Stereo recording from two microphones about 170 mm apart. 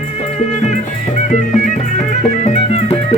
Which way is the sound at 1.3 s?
45° left (ahead or behind).